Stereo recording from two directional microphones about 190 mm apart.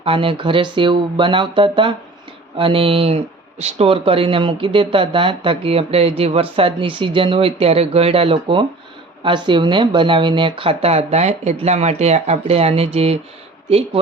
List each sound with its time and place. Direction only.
0.0 s speech: 30° right (ahead or behind)